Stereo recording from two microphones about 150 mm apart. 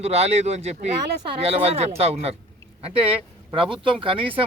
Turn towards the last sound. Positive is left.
turn(degrees=-35)  # may be behind; listen again after turning